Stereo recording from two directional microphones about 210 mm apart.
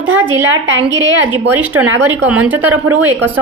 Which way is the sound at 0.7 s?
60° right (ahead or behind).